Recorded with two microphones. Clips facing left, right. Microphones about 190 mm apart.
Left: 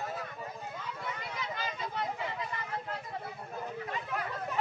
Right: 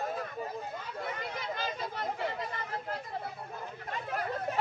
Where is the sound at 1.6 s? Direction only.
45° right (ahead or behind).